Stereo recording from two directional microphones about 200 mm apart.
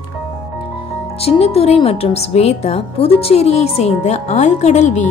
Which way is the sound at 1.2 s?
30° left (ahead or behind).